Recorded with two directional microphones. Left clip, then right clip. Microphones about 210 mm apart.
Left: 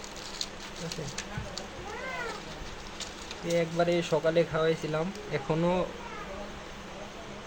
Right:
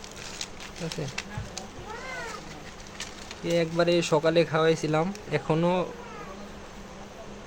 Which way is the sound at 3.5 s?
40° right (ahead or behind).